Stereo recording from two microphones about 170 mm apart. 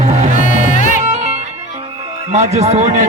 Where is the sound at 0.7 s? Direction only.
45° left (ahead or behind).